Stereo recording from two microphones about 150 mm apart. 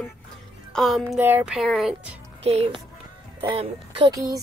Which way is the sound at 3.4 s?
35° right (ahead or behind).